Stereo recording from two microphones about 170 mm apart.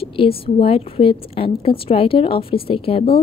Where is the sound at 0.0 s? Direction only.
35° left (ahead or behind).